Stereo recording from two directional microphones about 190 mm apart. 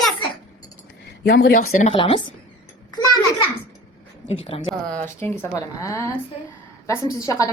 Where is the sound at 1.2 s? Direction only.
55° left (ahead or behind).